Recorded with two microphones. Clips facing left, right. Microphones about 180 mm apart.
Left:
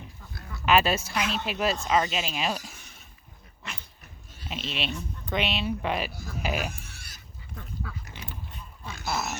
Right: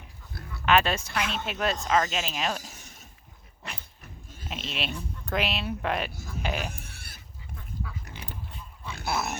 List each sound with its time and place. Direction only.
0.6 s speech: 5° left (ahead or behind)
2.6 s a sound: 40° right (ahead or behind)
4.4 s speech: centre (ahead or behind)
6.8 s pig: 55° right (ahead or behind)
9.0 s dog: 55° right (ahead or behind)